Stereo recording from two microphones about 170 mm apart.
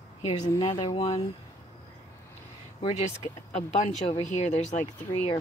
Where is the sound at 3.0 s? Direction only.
45° left (ahead or behind).